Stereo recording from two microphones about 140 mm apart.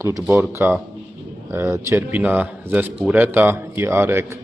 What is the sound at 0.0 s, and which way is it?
A man's voice, 15° right (ahead or behind).